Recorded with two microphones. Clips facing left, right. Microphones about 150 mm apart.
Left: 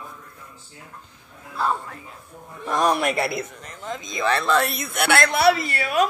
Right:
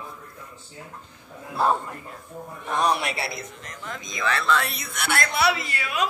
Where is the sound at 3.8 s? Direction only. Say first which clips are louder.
Left 4 dB; 25° left (ahead or behind); by 5.2 s 65° left (ahead or behind).